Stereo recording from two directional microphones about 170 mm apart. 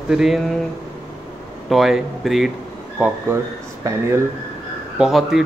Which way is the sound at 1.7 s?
Centre (ahead or behind).